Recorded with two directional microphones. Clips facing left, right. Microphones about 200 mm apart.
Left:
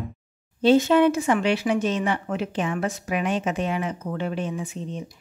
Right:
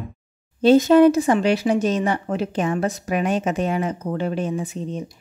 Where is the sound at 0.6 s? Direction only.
40° right (ahead or behind).